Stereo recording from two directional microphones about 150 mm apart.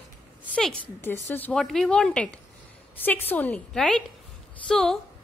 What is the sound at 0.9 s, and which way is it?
A woman's voice, 15° left (ahead or behind).